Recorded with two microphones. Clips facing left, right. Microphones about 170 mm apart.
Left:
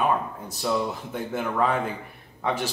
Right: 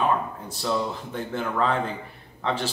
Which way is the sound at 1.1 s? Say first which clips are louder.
Even; 10° left (ahead or behind).